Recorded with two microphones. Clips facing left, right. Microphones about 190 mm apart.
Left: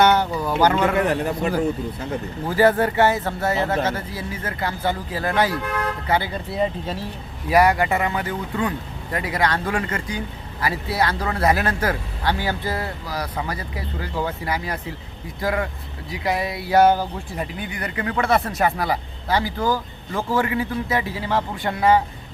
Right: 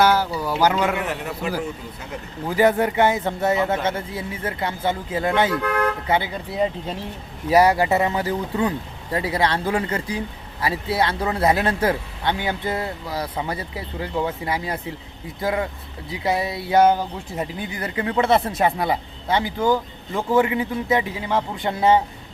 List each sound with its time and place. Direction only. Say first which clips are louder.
0.0 s speech: left 1 dB; 5° right (ahead or behind)
0.9 s a man's voice: left 6 dB; 40° left (ahead or behind)
2.5 s a man's voice: left 1 dB; 15° right (ahead or behind)